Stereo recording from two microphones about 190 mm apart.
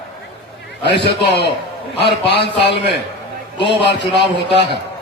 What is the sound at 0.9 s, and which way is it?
A man's voice, 65° left (ahead or behind).